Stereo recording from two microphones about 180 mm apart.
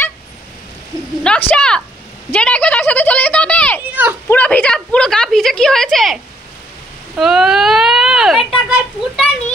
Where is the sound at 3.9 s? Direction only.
10° right (ahead or behind).